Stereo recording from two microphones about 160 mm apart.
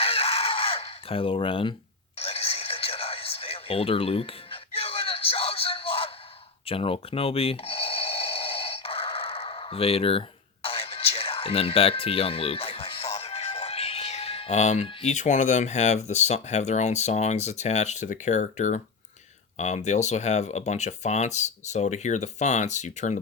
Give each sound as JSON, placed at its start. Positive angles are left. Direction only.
{"t": 0.0, "sound": "fowl", "side_deg": 35}
{"t": 2.1, "sound": "a sound", "side_deg": 40}
{"t": 14.8, "sound": "speech", "side_deg": 45}